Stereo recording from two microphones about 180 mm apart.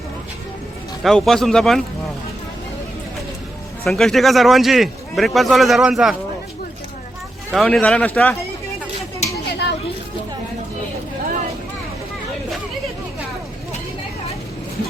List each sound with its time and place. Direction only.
1.0 s a man's voice: centre (ahead or behind)
3.8 s a man's voice: centre (ahead or behind)
7.5 s speech: 5° left (ahead or behind)
9.5 s a sound: 70° left (ahead or behind)